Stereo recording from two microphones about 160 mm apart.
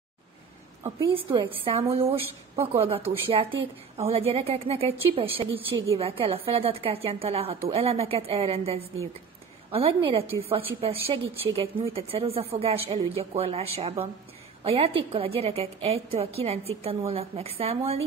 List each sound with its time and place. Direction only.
1.1 s a woman's voice: 30° right (ahead or behind)